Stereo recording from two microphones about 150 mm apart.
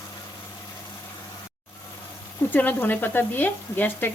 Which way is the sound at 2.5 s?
10° left (ahead or behind).